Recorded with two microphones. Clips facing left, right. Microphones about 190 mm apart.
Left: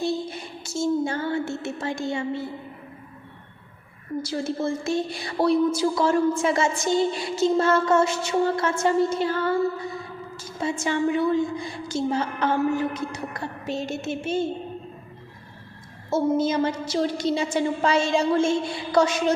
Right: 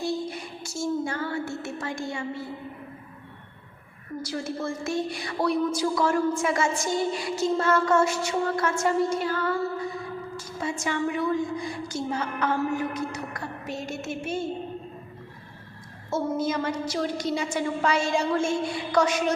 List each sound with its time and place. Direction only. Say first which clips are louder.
0.0 s child singing: left 2 dB; 25° left (ahead or behind)
4.3 s a woman's voice: left 4 dB; 25° left (ahead or behind)
16.0 s a woman's voice: left 5 dB; 25° left (ahead or behind)